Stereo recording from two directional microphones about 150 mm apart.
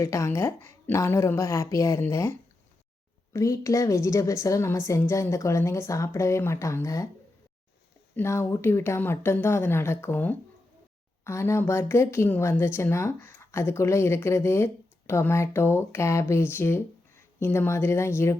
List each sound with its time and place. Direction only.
0.0 s a woman's voice: 20° left (ahead or behind)
3.3 s a woman's voice: 20° left (ahead or behind)
8.1 s speech: 20° left (ahead or behind)